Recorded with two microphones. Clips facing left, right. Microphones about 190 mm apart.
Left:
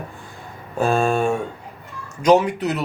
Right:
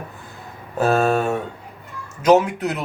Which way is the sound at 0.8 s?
40° right (ahead or behind).